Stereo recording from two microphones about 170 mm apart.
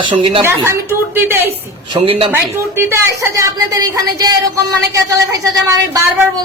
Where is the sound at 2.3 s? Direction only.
15° right (ahead or behind).